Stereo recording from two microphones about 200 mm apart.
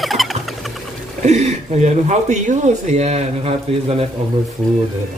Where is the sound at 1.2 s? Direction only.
35° right (ahead or behind).